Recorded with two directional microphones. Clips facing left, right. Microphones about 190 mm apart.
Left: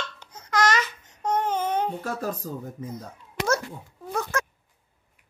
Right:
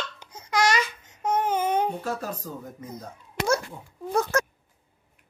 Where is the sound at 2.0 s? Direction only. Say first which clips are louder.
Left 1 dB; 40° left (ahead or behind).